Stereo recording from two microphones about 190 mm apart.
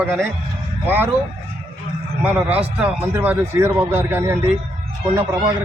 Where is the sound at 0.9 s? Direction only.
10° right (ahead or behind).